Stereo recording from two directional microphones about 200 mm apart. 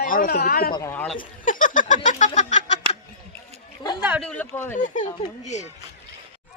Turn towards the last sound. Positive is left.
turn(degrees=35)  # may be behind; listen again after turning